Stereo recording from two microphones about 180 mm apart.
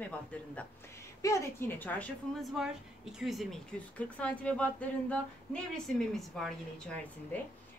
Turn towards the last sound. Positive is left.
turn(degrees=5)  # may be behind; listen again after turning